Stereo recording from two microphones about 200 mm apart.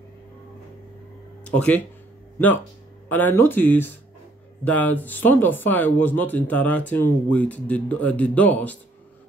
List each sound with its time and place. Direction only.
1.4 s speech: 5° left (ahead or behind)